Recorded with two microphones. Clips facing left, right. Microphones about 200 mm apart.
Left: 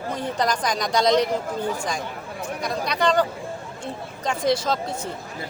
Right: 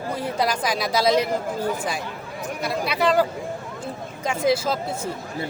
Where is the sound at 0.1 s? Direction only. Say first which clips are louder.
Even; 10° right (ahead or behind).